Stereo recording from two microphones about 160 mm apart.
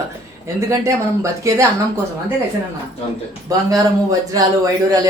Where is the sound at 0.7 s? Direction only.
20° right (ahead or behind).